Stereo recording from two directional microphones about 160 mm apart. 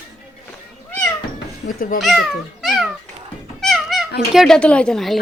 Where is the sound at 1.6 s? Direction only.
90° left.